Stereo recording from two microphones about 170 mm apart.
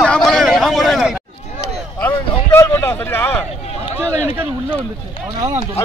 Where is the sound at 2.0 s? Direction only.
15° left (ahead or behind).